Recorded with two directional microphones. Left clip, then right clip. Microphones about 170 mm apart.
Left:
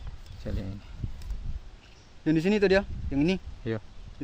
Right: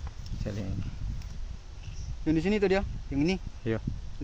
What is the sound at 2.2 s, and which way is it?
Speech, 65° left (ahead or behind).